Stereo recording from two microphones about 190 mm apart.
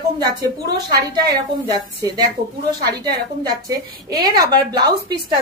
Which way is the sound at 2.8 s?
20° right (ahead or behind).